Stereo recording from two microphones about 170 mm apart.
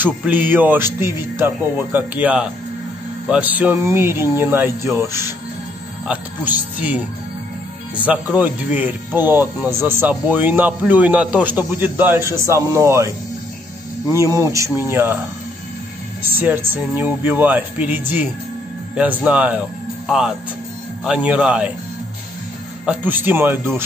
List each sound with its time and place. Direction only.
0.0 s speech: 10° right (ahead or behind)
8.1 s speech: 10° right (ahead or behind)
16.2 s speech: 10° right (ahead or behind)
22.8 s speech: 10° right (ahead or behind)